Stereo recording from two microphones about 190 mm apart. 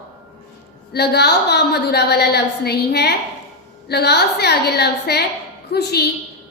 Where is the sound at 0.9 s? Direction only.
60° left (ahead or behind).